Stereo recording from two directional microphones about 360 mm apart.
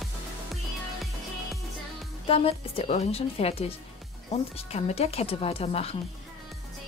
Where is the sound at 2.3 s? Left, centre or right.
Centre.